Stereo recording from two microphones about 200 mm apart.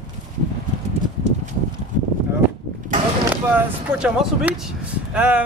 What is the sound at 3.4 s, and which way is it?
Speech, 5° right (ahead or behind).